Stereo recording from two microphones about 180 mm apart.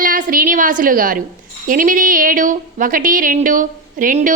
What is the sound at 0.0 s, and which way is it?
A woman's voice, 50° right (ahead or behind).